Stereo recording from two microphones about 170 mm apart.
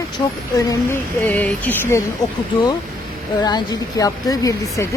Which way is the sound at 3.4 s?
25° left (ahead or behind).